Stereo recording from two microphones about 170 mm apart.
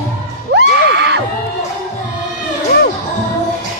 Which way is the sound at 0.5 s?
90° right.